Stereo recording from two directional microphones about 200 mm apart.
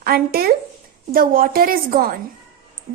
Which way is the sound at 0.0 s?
50° right (ahead or behind).